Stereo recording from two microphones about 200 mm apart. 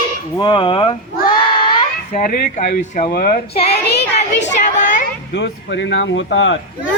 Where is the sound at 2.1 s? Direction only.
40° left (ahead or behind); by 4.2 s 55° left (ahead or behind).